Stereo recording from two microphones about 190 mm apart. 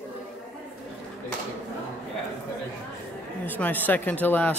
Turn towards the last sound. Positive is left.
turn(degrees=10)  # may be behind; listen again after turning